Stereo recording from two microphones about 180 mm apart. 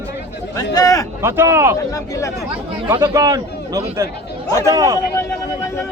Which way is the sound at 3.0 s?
20° right (ahead or behind).